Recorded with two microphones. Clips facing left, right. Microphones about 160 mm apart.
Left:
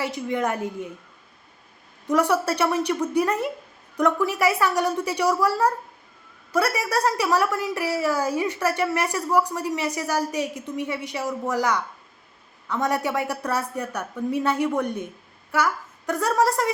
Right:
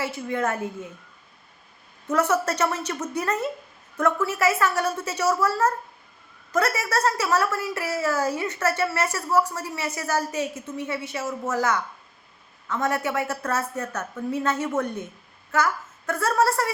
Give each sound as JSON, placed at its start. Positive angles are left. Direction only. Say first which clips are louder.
{"t": 0.0, "sound": "a woman's voice", "louder": "left 1 dB", "side_deg": 20}
{"t": 2.0, "sound": "a woman's voice", "louder": "left 2 dB", "side_deg": 15}